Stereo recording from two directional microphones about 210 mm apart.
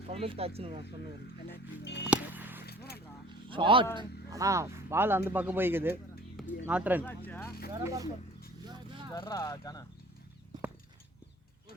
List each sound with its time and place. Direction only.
0.1 s speech: 30° right (ahead or behind)
1.8 s music: 55° left (ahead or behind)
2.0 s music: 10° right (ahead or behind)
2.6 s a sound: 50° left (ahead or behind)
3.5 s speech: 25° right (ahead or behind); by 7.0 s 5° right (ahead or behind)
7.0 s speech: 10° left (ahead or behind)
7.7 s speech: 15° right (ahead or behind)
9.1 s speech: 20° left (ahead or behind)